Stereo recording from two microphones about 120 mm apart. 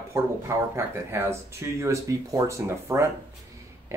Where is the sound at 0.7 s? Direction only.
20° right (ahead or behind).